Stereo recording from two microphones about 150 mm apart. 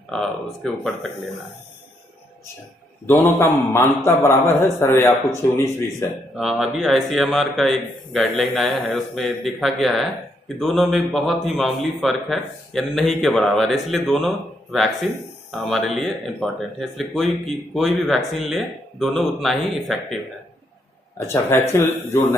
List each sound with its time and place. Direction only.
0.1 s speech: 5° left (ahead or behind)
3.1 s a man's voice: 15° left (ahead or behind)
6.3 s speech: 5° right (ahead or behind)
21.3 s a man's voice: 15° left (ahead or behind)